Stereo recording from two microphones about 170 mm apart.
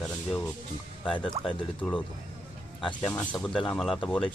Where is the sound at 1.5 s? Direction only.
5° left (ahead or behind).